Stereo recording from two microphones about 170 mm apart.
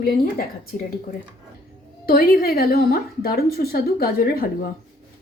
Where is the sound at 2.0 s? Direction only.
60° left (ahead or behind).